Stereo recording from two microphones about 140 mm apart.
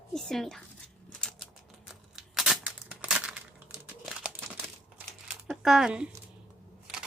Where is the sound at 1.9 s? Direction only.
Centre (ahead or behind).